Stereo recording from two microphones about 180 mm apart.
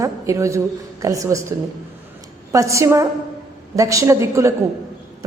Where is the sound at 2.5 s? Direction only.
15° right (ahead or behind).